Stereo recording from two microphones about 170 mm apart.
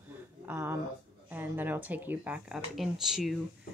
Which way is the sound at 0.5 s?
15° right (ahead or behind).